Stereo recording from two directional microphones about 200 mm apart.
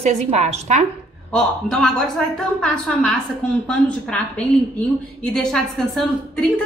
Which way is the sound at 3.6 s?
5° left (ahead or behind).